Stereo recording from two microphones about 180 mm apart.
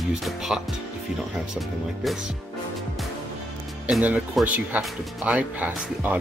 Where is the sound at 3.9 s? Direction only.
5° right (ahead or behind).